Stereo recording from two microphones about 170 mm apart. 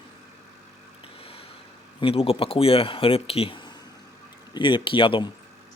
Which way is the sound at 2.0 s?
35° left (ahead or behind).